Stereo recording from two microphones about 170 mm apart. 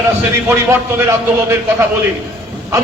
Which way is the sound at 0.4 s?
10° right (ahead or behind).